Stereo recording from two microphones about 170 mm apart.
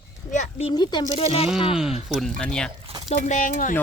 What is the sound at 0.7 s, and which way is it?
Speech, 25° left (ahead or behind).